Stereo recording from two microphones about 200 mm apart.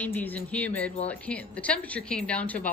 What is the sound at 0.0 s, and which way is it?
A woman's voice, 10° left (ahead or behind).